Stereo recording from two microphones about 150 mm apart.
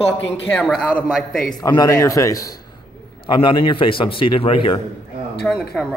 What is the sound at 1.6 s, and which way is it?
Speech, 25° left (ahead or behind).